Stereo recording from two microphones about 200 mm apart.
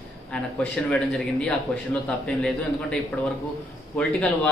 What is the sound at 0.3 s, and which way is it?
A man's voice, 5° left (ahead or behind).